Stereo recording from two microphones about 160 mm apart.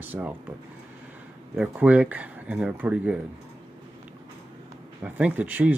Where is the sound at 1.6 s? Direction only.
10° right (ahead or behind).